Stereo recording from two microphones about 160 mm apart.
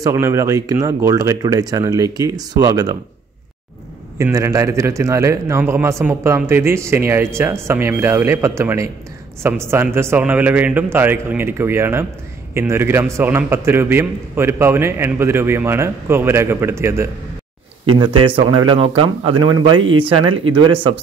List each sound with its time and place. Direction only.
0.0 s speech: 20° right (ahead or behind)
4.2 s a man's voice: 20° right (ahead or behind)
17.9 s speech: 30° right (ahead or behind)